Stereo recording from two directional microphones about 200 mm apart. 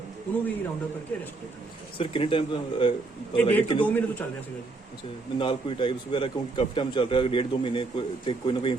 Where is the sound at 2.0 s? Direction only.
25° left (ahead or behind).